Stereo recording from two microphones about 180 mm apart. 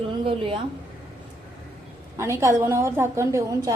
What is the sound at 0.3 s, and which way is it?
Speech, 30° right (ahead or behind).